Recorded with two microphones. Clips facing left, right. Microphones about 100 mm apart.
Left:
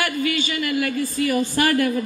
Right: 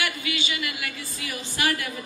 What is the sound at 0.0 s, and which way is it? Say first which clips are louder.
A man's voice: left 7 dB; 45° left (ahead or behind).